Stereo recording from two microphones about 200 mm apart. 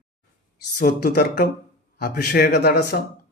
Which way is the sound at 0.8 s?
50° left (ahead or behind).